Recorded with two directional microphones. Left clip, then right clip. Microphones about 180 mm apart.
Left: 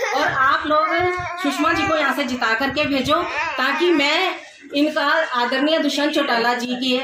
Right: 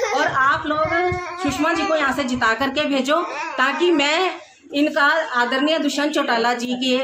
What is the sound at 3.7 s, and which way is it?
Speech, 30° right (ahead or behind).